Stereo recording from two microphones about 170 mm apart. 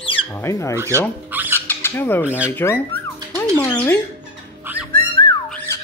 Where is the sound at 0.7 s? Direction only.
15° right (ahead or behind).